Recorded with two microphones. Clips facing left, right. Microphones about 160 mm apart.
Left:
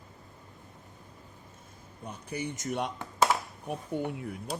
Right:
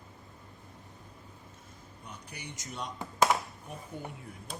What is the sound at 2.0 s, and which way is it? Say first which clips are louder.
Speech: left 10 dB; 55° left (ahead or behind).